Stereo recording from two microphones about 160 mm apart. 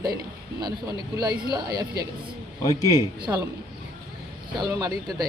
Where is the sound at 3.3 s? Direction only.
15° right (ahead or behind).